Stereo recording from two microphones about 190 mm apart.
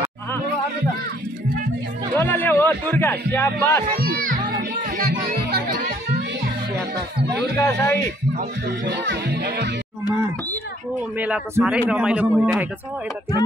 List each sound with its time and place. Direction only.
2.1 s music: 10° left (ahead or behind)
3.9 s music: 50° right (ahead or behind)
7.5 s speech: 10° left (ahead or behind)
8.6 s music: 65° right (ahead or behind)
11.0 s a man's voice: 5° right (ahead or behind)